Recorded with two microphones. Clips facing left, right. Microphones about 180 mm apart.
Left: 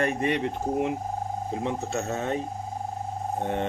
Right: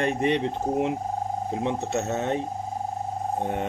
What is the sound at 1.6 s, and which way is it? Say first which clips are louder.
Speech: right 3 dB; 20° right (ahead or behind).